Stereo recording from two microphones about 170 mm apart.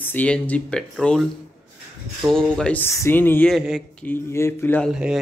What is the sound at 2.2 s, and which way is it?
Speech, 5° left (ahead or behind).